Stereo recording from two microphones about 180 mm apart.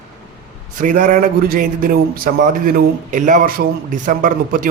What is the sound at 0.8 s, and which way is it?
A man's voice, 50° right (ahead or behind).